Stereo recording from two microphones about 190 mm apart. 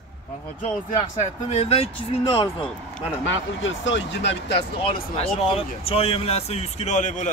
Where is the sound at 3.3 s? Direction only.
70° left (ahead or behind).